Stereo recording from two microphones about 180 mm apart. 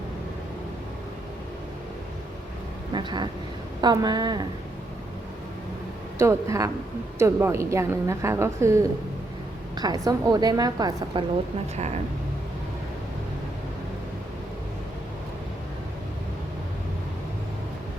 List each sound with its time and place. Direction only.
2.9 s vehicle: 25° right (ahead or behind)
3.8 s a woman's voice: 20° right (ahead or behind)
6.1 s a woman's voice: 15° right (ahead or behind)